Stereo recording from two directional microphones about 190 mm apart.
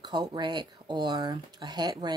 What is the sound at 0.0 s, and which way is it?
Speech, 20° right (ahead or behind).